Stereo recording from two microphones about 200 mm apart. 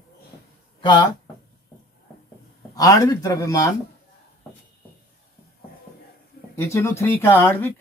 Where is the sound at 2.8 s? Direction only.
15° left (ahead or behind).